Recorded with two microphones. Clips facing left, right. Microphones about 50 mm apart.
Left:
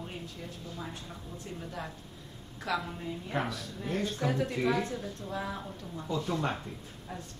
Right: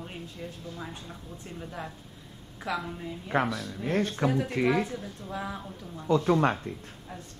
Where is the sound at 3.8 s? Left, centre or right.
Right.